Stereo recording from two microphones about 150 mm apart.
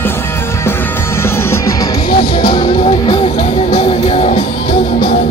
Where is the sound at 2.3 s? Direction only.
30° left (ahead or behind).